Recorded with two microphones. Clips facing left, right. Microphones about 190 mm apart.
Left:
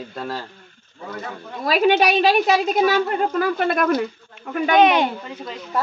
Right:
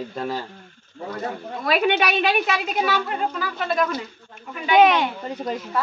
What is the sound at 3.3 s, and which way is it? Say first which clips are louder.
Speech: left 5 dB; 55° left (ahead or behind).